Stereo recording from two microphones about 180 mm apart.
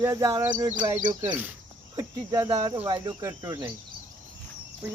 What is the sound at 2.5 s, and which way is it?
Speech, 30° right (ahead or behind).